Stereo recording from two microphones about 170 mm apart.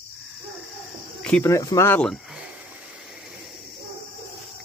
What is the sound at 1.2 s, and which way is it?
Speech, 5° left (ahead or behind).